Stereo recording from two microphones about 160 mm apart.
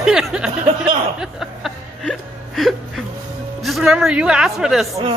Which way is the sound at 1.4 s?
Centre (ahead or behind).